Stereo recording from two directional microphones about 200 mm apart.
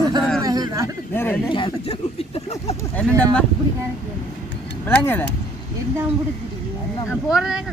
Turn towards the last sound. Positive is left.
turn(degrees=-5)  # may be behind; listen again after turning